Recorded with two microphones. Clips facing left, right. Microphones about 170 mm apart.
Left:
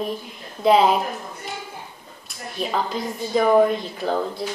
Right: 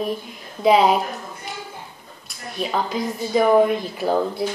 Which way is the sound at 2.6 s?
Centre (ahead or behind).